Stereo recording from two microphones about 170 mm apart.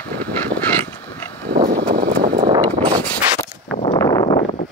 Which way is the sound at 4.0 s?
25° left (ahead or behind).